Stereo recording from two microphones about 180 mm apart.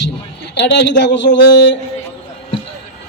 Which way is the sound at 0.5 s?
70° left (ahead or behind).